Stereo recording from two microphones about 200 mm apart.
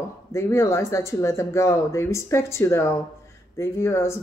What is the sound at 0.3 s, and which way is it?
Speech, 15° left (ahead or behind).